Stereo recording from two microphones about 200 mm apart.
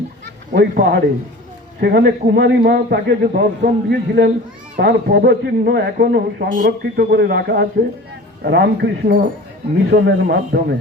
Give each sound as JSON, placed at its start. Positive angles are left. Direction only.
{"t": 0.5, "sound": "speech", "side_deg": -55}